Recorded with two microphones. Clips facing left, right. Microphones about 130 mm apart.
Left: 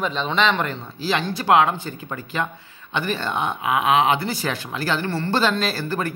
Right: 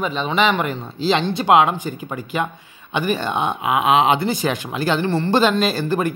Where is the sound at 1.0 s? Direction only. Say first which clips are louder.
Right 5 dB; 25° right (ahead or behind).